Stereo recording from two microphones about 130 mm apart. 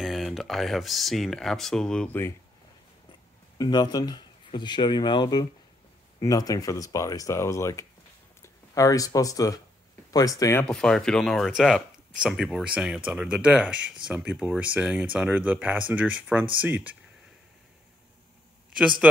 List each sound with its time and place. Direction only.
0.0 s speech: centre (ahead or behind)
3.5 s speech: 30° left (ahead or behind)
10.6 s speech: 5° left (ahead or behind); by 16.9 s 10° right (ahead or behind)